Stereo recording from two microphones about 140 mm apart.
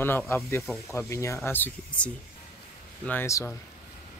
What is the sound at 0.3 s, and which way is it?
Speech, 20° left (ahead or behind).